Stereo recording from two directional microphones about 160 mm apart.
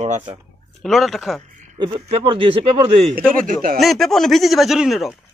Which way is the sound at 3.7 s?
Centre (ahead or behind).